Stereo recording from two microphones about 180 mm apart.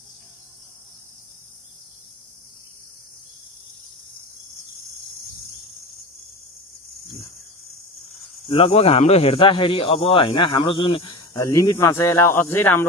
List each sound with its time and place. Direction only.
8.5 s speech: 30° left (ahead or behind); by 12.8 s 15° left (ahead or behind)